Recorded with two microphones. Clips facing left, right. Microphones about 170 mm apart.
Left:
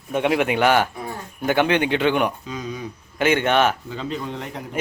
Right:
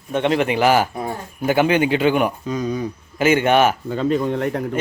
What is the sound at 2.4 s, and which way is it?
Speech, 45° right (ahead or behind).